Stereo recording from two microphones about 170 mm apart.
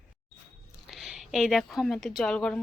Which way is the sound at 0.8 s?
Centre (ahead or behind).